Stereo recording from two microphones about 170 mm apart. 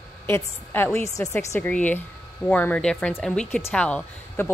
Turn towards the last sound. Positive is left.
turn(degrees=10)  # may be behind; listen again after turning